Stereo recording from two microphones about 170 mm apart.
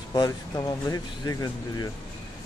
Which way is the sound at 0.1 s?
20° left (ahead or behind).